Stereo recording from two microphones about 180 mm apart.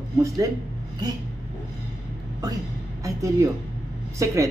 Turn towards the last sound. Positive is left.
turn(degrees=-15)  # may be behind; listen again after turning